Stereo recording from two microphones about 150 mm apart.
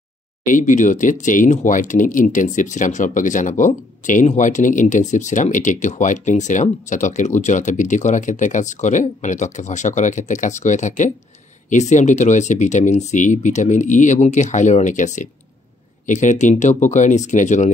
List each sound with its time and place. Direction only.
0.5 s speech: 60° left (ahead or behind)